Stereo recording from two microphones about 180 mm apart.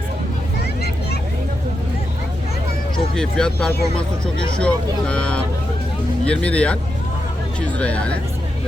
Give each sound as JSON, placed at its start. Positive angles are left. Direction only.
{"t": 0.6, "sound": "vehicle", "side_deg": 65}
{"t": 3.2, "sound": "speech", "side_deg": 5}
{"t": 7.8, "sound": "speech", "side_deg": 5}